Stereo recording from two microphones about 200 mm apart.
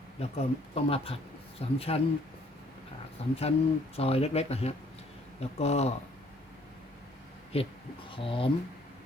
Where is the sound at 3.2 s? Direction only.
30° left (ahead or behind).